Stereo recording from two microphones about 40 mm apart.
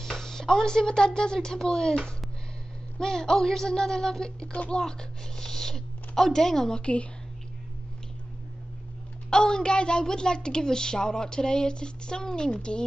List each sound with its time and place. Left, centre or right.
0.0 s speech: centre
3.0 s speech: centre
4.5 s speech: left
4.7 s a sound: centre
6.8 s a woman's voice: left
9.3 s a woman's voice: centre